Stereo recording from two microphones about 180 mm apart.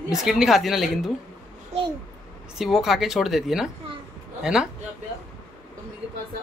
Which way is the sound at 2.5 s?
Centre (ahead or behind).